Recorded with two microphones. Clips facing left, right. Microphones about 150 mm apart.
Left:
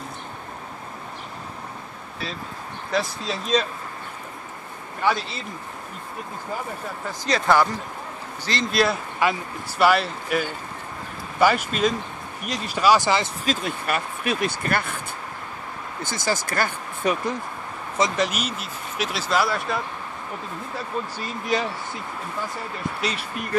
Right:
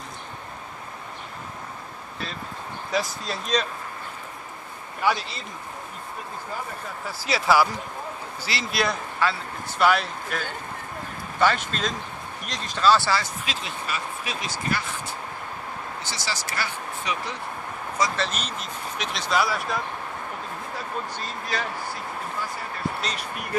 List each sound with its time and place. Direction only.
2.9 s speech: centre (ahead or behind)
7.1 s speech: 5° right (ahead or behind)
9.2 s speech: 15° left (ahead or behind)
9.8 s speech: 5° left (ahead or behind)
13.5 s speech: 50° left (ahead or behind)
16.0 s speech: 50° left (ahead or behind)
17.9 s speech: 20° left (ahead or behind); by 19.8 s centre (ahead or behind)
21.2 s speech: 15° left (ahead or behind)